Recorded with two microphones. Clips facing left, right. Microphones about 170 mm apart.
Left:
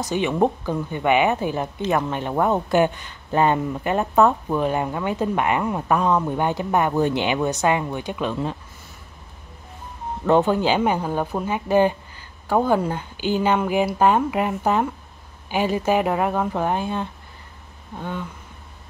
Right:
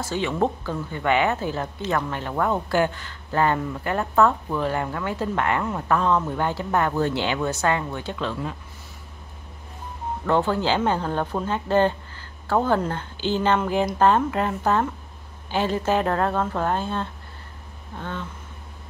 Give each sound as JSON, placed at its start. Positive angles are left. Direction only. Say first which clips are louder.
{"t": 0.0, "sound": "speech", "louder": "left 3 dB", "side_deg": 15}
{"t": 10.2, "sound": "speech", "louder": "left 4 dB", "side_deg": 20}